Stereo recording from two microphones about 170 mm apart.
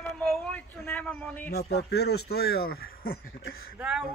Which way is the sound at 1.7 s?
75° left (ahead or behind).